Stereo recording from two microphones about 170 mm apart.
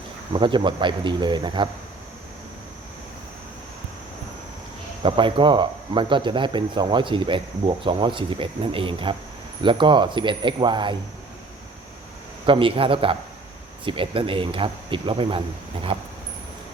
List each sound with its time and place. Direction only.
0.3 s speech: 30° right (ahead or behind)
5.0 s speech: 30° right (ahead or behind)
12.5 s speech: 30° right (ahead or behind)